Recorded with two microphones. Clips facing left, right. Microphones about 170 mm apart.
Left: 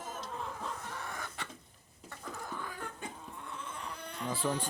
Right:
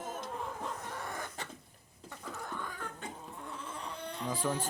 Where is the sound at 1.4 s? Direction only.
40° right (ahead or behind).